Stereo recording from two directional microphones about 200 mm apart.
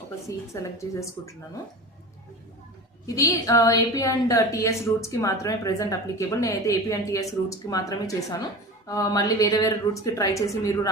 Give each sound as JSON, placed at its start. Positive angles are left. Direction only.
{"t": 0.3, "sound": "a woman's voice", "side_deg": 15}
{"t": 3.1, "sound": "a woman's voice", "side_deg": 15}